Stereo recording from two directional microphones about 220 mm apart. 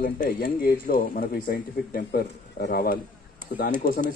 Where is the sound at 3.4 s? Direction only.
40° right (ahead or behind).